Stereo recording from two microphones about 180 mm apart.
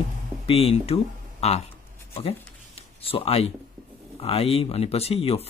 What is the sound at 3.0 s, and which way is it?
Speech, 30° left (ahead or behind).